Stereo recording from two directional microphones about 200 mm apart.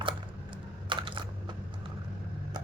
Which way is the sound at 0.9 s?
25° right (ahead or behind).